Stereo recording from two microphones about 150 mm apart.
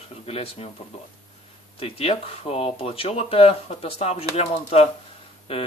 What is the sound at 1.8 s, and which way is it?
Speech, 40° left (ahead or behind).